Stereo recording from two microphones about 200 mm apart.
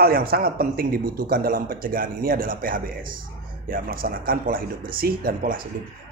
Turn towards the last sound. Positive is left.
turn(degrees=-45)  # may be behind; listen again after turning